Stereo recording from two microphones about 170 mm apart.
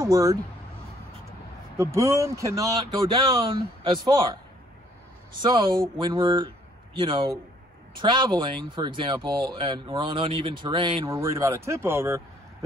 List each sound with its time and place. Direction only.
0.0 s speech: 20° right (ahead or behind)
1.8 s speech: 15° right (ahead or behind)
5.4 s a man's voice: 25° right (ahead or behind)
11.1 s speech: 15° right (ahead or behind)